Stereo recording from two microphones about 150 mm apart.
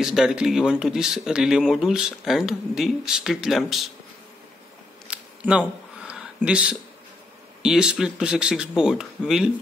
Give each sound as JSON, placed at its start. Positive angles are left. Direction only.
{"t": 0.0, "sound": "speech", "side_deg": -5}
{"t": 5.0, "sound": "a sound", "side_deg": -5}
{"t": 7.6, "sound": "speech", "side_deg": -5}